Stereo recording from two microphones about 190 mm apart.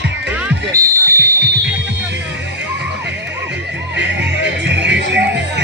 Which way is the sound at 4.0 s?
65° right (ahead or behind).